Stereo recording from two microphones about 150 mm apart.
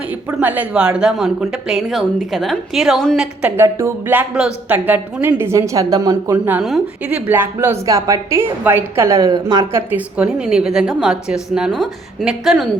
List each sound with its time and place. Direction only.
0.1 s a woman's voice: 10° right (ahead or behind)
3.4 s a woman's voice: 15° right (ahead or behind)
6.3 s a woman's voice: 10° right (ahead or behind)